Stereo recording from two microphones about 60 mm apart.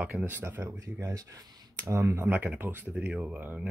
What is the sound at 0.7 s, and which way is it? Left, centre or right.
Speech, right.